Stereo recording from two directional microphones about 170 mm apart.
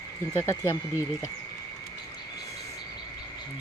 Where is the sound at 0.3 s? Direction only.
15° left (ahead or behind).